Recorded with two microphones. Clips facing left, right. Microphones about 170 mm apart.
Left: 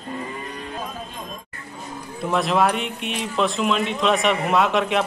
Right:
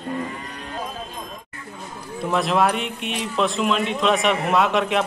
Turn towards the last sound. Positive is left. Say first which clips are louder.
# even
turn(degrees=0)  # may be behind; listen again after turning